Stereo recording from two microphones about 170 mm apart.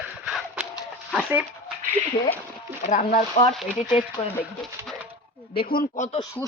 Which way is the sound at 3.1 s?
45° left (ahead or behind).